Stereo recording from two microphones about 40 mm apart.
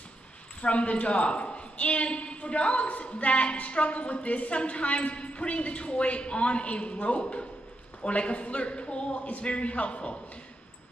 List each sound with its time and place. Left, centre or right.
0.6 s a woman's voice: left